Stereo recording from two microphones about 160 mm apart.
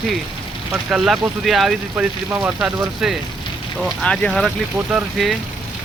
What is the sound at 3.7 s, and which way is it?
Speech, centre (ahead or behind).